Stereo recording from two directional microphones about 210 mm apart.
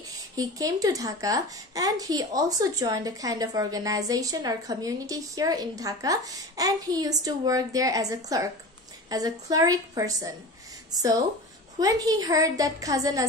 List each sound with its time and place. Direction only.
0.4 s a woman's voice: 15° right (ahead or behind)